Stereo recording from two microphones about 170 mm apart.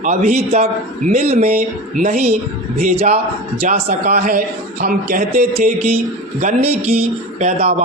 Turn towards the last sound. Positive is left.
turn(degrees=-40)  # may be behind; listen again after turning